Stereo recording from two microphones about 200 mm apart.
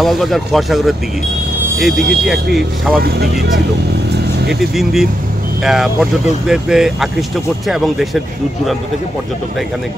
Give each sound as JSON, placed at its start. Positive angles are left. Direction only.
{"t": 0.0, "sound": "speech", "side_deg": 0}
{"t": 3.0, "sound": "speech", "side_deg": -55}
{"t": 4.1, "sound": "vehicle", "side_deg": -55}
{"t": 4.6, "sound": "speech", "side_deg": 0}